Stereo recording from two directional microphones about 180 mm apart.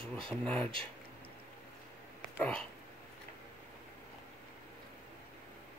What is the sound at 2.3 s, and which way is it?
Speech, 5° left (ahead or behind).